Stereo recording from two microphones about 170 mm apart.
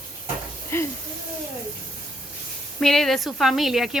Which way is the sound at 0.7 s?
15° left (ahead or behind).